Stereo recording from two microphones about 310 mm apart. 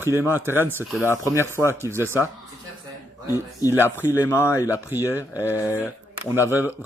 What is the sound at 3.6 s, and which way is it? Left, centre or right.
Speech, centre.